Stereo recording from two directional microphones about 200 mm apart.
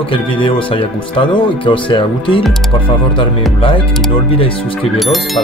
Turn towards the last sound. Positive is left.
turn(degrees=0)  # may be behind; listen again after turning